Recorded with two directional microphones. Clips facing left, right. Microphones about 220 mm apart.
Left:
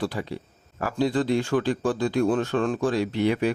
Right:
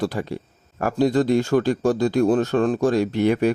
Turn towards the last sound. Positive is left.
turn(degrees=-45)  # may be behind; listen again after turning